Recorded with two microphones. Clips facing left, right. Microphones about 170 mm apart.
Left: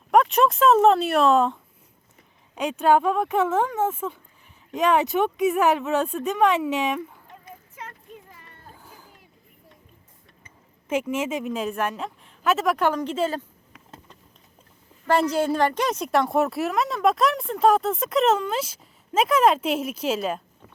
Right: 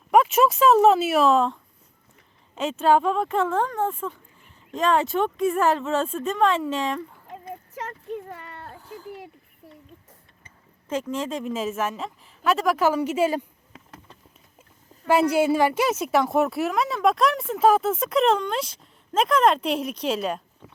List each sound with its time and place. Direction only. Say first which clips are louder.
0.1 s a woman's voice: even; centre (ahead or behind)
2.8 s a woman's voice: even; centre (ahead or behind)
4.7 s speech: left 1 dB; 20° left (ahead or behind)
6.0 s a woman's voice: left 1 dB; centre (ahead or behind)
6.7 s speech: left 2 dB; 20° left (ahead or behind)
8.1 s a sound: right 12 dB; 65° right (ahead or behind)
10.8 s a woman's voice: left 2 dB; 10° left (ahead or behind); by 13.4 s 10° right (ahead or behind)
15.0 s a woman's voice: right 2 dB; 10° right (ahead or behind)